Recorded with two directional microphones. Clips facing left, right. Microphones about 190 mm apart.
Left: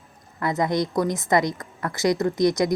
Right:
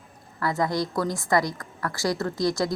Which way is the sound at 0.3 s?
20° left (ahead or behind).